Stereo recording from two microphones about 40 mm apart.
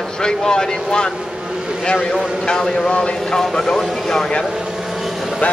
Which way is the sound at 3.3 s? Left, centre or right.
Centre.